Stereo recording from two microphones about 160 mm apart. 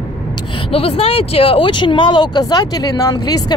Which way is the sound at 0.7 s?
35° left (ahead or behind).